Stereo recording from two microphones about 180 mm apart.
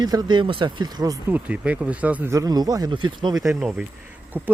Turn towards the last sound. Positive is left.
turn(degrees=-10)  # may be behind; listen again after turning